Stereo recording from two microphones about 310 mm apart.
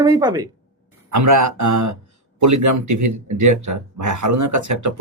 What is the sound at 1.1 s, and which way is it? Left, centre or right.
Speech, right.